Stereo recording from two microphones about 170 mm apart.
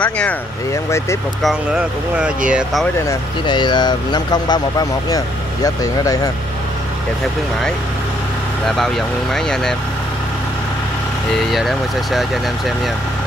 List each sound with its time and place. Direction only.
0.0 s speech: 10° left (ahead or behind)
1.4 s speech: 5° right (ahead or behind)
3.1 s speech: 25° left (ahead or behind)
8.6 s speech: centre (ahead or behind)
11.3 s speech: centre (ahead or behind)